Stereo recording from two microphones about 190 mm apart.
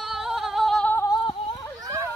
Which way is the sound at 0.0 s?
Centre (ahead or behind).